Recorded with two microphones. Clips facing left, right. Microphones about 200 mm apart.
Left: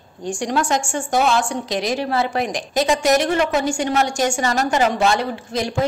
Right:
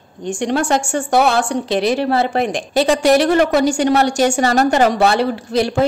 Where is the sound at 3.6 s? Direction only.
70° right (ahead or behind).